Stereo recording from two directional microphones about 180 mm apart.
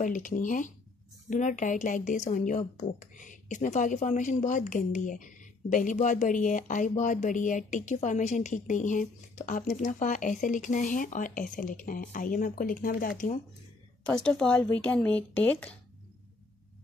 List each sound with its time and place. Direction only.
0.0 s speech: 45° left (ahead or behind)
14.0 s speech: 5° left (ahead or behind)